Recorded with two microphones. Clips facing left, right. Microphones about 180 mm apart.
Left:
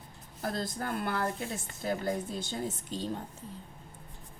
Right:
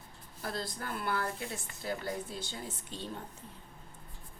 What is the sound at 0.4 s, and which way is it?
Speech, 50° left (ahead or behind).